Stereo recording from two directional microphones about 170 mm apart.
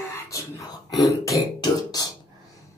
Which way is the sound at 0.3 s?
20° left (ahead or behind).